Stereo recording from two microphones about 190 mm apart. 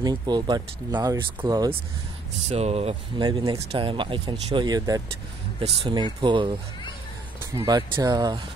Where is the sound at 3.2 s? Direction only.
20° right (ahead or behind).